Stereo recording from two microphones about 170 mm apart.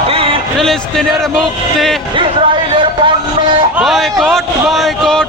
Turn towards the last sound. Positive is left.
turn(degrees=0)  # may be behind; listen again after turning